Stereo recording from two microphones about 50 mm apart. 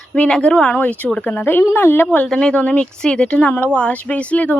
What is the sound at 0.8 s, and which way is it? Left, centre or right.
Speech, left.